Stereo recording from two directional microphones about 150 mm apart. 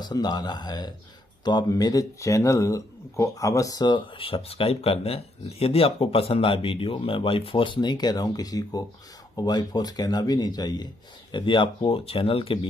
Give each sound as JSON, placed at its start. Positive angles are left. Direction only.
{"t": 0.0, "sound": "speech", "side_deg": 30}